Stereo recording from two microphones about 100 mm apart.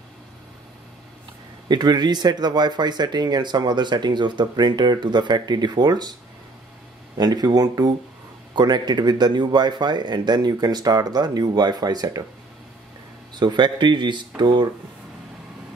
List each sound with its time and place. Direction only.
1.7 s speech: 45° right (ahead or behind)
7.2 s speech: 40° right (ahead or behind)
13.3 s speech: 45° right (ahead or behind)